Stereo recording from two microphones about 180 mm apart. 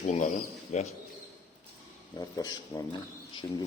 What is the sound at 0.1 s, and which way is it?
Speech, 40° left (ahead or behind).